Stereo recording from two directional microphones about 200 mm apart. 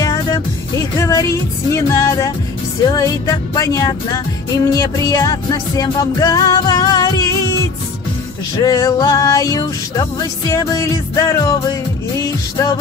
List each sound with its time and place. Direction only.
0.0 s music: 15° left (ahead or behind)
8.5 s music: 15° left (ahead or behind)